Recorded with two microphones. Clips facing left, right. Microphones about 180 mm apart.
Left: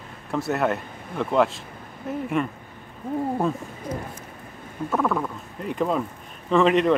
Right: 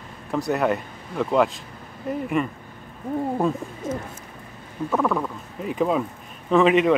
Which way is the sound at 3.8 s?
25° right (ahead or behind).